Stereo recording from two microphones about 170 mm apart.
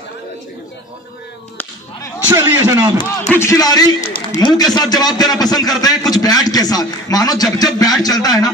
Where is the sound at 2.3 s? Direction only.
15° right (ahead or behind).